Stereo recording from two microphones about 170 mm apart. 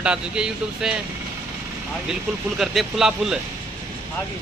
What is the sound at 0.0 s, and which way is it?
Speech, 5° right (ahead or behind).